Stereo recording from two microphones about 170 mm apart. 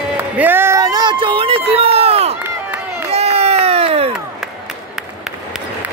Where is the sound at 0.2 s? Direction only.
10° right (ahead or behind); by 2.3 s 35° right (ahead or behind).